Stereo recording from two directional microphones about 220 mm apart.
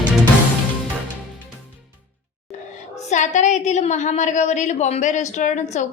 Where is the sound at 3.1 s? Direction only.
35° left (ahead or behind).